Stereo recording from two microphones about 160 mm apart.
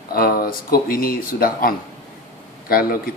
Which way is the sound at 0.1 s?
70° left (ahead or behind).